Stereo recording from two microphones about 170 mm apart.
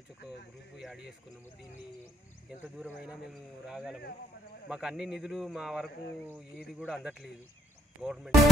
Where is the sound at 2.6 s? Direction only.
5° right (ahead or behind).